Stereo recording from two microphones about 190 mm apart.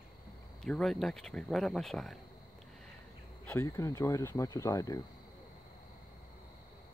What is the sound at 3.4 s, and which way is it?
Speech, 15° left (ahead or behind).